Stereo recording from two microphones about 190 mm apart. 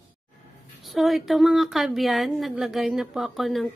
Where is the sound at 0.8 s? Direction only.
Centre (ahead or behind).